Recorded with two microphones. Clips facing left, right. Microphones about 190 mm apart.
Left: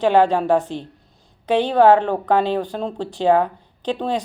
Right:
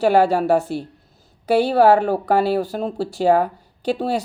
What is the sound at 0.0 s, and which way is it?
Speech, 10° right (ahead or behind).